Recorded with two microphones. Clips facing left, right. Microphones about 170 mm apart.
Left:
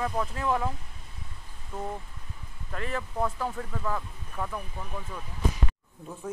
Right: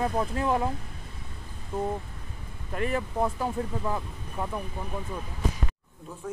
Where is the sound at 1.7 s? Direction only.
20° right (ahead or behind).